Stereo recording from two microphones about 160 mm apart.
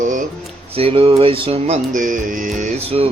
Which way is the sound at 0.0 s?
55° right (ahead or behind).